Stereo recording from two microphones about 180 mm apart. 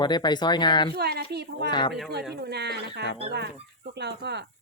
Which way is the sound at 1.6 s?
25° left (ahead or behind).